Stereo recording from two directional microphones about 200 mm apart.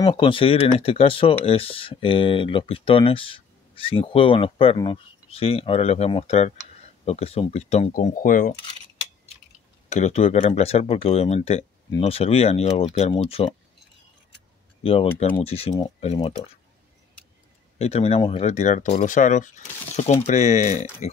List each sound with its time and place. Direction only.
0.0 s speech: 25° left (ahead or behind); by 8.5 s 45° left (ahead or behind)
9.8 s speech: 35° left (ahead or behind)
14.8 s speech: 30° left (ahead or behind)
17.7 s speech: 30° left (ahead or behind)